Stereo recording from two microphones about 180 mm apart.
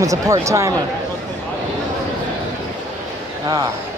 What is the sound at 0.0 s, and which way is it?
Speech, 20° right (ahead or behind).